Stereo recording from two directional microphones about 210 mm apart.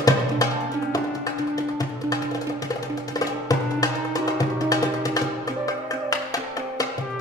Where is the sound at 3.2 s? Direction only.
15° left (ahead or behind).